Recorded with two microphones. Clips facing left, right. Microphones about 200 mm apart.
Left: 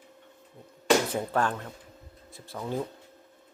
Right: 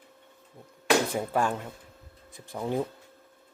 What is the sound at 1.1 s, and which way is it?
Speech, 10° right (ahead or behind).